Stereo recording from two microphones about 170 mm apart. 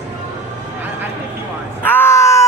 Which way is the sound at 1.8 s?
10° left (ahead or behind).